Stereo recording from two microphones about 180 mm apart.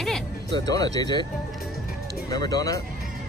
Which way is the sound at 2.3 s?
20° left (ahead or behind).